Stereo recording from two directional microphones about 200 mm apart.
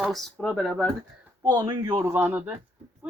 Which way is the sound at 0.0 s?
Centre (ahead or behind).